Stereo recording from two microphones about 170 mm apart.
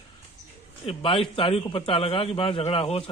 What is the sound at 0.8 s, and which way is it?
A man's voice, 35° left (ahead or behind).